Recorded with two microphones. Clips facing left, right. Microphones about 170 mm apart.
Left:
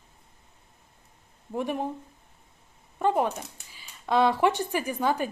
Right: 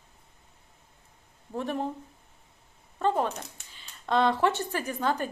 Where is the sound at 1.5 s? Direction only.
15° left (ahead or behind).